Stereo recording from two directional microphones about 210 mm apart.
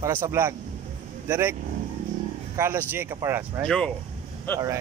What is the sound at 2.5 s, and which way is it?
Speech, 10° right (ahead or behind).